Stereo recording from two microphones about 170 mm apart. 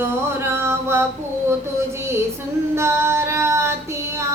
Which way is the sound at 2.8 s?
15° right (ahead or behind).